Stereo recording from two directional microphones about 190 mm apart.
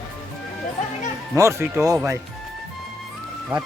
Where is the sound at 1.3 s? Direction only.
15° right (ahead or behind).